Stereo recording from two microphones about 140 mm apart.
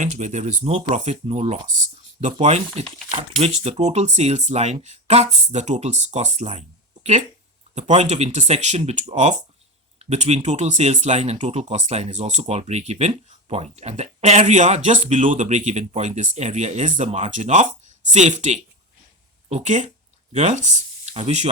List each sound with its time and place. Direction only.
0.0 s speech: 60° right (ahead or behind)